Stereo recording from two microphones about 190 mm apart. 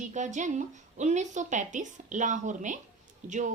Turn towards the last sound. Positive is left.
turn(degrees=-40)  # may be behind; listen again after turning